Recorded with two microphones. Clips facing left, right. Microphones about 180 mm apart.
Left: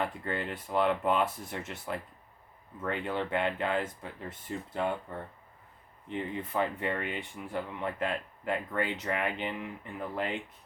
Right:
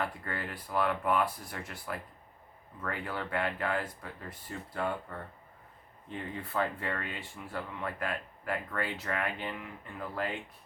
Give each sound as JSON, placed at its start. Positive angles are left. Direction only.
{"t": 0.0, "sound": "speech", "side_deg": 20}
{"t": 6.1, "sound": "speech", "side_deg": 20}